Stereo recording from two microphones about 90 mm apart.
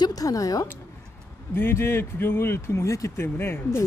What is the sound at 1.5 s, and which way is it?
Speech, 25° left (ahead or behind).